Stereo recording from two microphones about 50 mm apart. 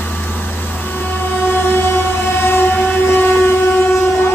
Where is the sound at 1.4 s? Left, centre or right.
Left.